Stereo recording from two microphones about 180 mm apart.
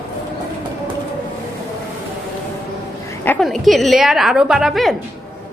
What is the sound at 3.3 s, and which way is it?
A woman's voice, centre (ahead or behind).